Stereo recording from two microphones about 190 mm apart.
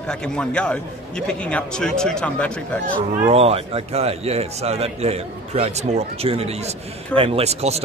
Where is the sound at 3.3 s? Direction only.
30° right (ahead or behind).